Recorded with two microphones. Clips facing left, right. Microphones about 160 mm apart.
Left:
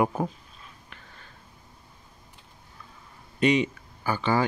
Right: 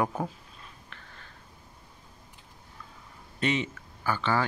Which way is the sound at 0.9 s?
10° left (ahead or behind).